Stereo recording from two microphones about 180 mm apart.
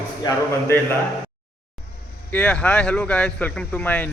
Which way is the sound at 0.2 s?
20° left (ahead or behind).